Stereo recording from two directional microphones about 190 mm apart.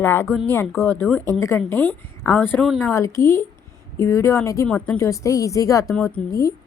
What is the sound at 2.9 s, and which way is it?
Speech, 15° left (ahead or behind).